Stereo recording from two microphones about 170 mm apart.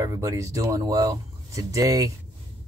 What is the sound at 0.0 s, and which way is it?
Speech, 20° right (ahead or behind).